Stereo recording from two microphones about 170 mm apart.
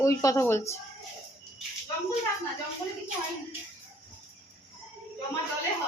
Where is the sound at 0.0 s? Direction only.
20° left (ahead or behind).